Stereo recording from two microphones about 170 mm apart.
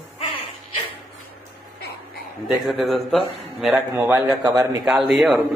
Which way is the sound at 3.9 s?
15° right (ahead or behind).